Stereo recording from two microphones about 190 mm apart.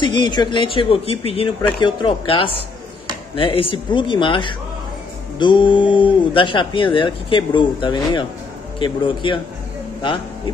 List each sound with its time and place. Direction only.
0.0 s speech: 25° left (ahead or behind)